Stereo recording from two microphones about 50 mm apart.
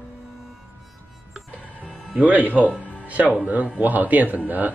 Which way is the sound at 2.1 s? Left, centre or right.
Right.